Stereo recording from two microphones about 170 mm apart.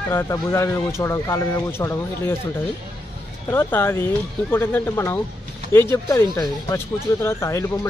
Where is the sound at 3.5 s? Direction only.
15° left (ahead or behind).